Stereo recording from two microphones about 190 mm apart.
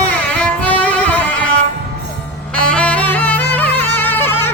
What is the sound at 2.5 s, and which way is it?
Music, 5° left (ahead or behind).